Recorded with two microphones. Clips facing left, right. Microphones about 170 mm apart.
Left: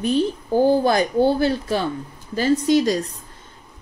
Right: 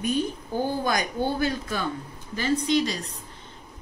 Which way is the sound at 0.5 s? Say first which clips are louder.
Left 9 dB; 35° left (ahead or behind).